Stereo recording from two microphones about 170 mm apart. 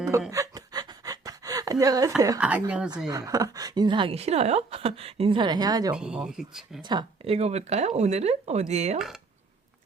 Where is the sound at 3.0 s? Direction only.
20° right (ahead or behind).